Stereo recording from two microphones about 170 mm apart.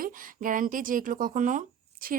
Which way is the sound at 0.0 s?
50° right (ahead or behind).